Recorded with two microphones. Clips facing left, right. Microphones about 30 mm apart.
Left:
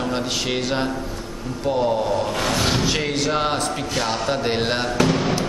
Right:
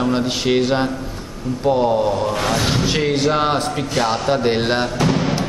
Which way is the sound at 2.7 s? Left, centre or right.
Centre.